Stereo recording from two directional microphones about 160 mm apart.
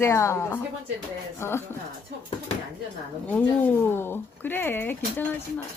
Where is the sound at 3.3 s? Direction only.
10° left (ahead or behind).